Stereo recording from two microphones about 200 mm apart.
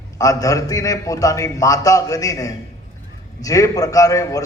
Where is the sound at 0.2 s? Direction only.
15° left (ahead or behind).